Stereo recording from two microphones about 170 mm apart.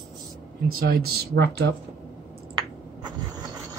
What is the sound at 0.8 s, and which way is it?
Speech, 65° right (ahead or behind).